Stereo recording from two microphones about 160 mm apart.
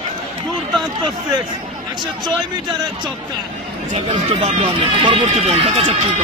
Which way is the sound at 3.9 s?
35° right (ahead or behind).